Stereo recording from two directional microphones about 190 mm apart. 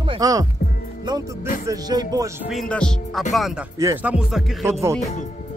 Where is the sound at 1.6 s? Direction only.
20° right (ahead or behind).